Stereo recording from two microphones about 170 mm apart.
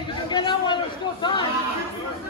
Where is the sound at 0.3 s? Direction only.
25° left (ahead or behind).